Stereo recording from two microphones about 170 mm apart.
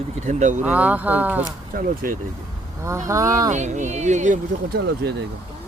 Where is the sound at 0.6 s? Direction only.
10° right (ahead or behind).